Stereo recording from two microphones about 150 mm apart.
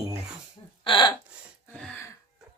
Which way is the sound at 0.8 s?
30° left (ahead or behind).